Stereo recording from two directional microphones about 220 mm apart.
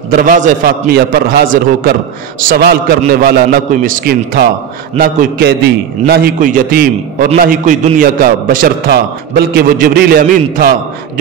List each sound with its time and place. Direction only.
0.1 s a man's voice: 35° right (ahead or behind)